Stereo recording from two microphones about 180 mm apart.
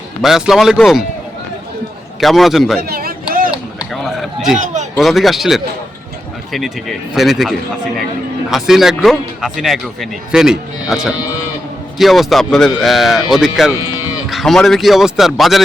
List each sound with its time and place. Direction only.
0.2 s a man's voice: centre (ahead or behind)
2.2 s a man's voice: centre (ahead or behind)
2.8 s a sound: 55° right (ahead or behind)
3.9 s a sound: centre (ahead or behind)
4.5 s a man's voice: 45° right (ahead or behind)
4.9 s a man's voice: centre (ahead or behind)